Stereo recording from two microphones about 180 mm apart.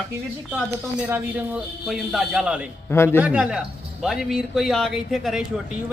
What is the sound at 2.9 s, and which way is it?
Speech, 15° left (ahead or behind).